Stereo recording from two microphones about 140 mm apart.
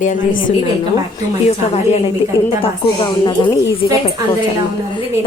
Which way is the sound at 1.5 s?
50° left (ahead or behind).